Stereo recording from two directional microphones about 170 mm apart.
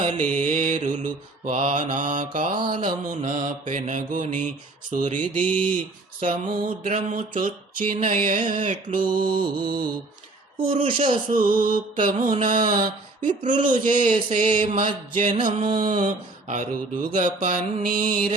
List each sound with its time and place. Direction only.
0.3 s mantra: 50° right (ahead or behind)
2.4 s mantra: 25° right (ahead or behind)
3.1 s mantra: 50° right (ahead or behind)
5.1 s mantra: 10° left (ahead or behind)
6.1 s mantra: 50° right (ahead or behind)
9.0 s mantra: 30° right (ahead or behind)
10.6 s speech: 30° right (ahead or behind)
11.3 s mantra: 55° right (ahead or behind)
15.4 s mantra: 30° right (ahead or behind)
16.0 s mantra: 50° right (ahead or behind)